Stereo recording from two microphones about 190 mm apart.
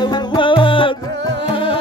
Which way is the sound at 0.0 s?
20° left (ahead or behind).